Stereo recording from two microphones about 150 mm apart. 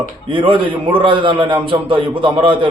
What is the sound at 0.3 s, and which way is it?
A man's voice, 35° right (ahead or behind).